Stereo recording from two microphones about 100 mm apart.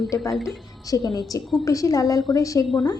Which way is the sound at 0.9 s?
40° left (ahead or behind).